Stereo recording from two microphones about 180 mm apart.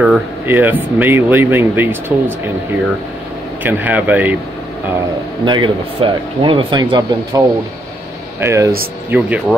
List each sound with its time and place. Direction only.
0.5 s speech: 10° right (ahead or behind)
5.4 s speech: 25° right (ahead or behind); by 9.6 s 10° right (ahead or behind)